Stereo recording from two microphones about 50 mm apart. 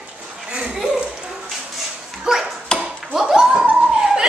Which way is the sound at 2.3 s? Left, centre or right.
Centre.